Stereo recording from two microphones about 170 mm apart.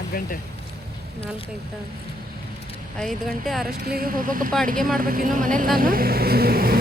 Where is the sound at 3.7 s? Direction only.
60° right (ahead or behind).